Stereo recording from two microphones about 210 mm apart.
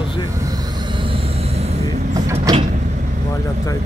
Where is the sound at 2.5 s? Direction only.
15° right (ahead or behind).